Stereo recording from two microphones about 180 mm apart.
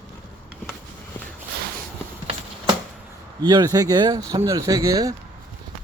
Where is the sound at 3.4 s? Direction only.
25° right (ahead or behind).